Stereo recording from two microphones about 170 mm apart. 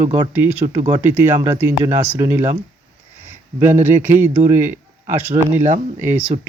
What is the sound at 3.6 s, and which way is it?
Speech, 15° right (ahead or behind).